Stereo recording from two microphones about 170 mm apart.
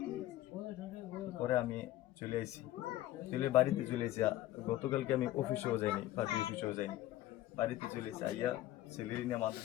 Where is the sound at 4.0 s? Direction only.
15° left (ahead or behind).